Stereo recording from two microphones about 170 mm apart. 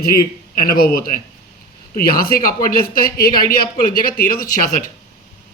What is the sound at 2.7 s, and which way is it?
Speech, 60° left (ahead or behind).